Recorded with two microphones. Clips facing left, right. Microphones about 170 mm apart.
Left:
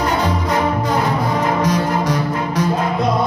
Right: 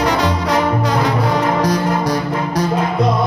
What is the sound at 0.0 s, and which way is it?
Music, 80° right.